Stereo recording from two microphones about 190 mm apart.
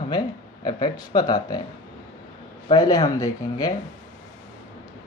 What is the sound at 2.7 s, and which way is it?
Speech, 20° left (ahead or behind).